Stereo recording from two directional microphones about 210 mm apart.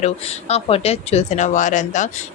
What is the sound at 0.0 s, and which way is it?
Speech, 30° left (ahead or behind).